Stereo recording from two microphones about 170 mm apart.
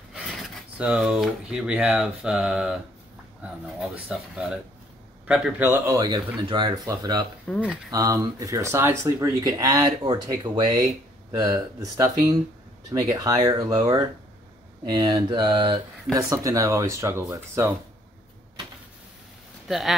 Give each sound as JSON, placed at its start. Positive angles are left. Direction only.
{"t": 0.1, "sound": "speech", "side_deg": -5}
{"t": 3.4, "sound": "a sound", "side_deg": -10}
{"t": 3.8, "sound": "speech", "side_deg": 0}
{"t": 7.5, "sound": "speech", "side_deg": 5}
{"t": 7.9, "sound": "speech", "side_deg": -20}
{"t": 19.7, "sound": "speech", "side_deg": 0}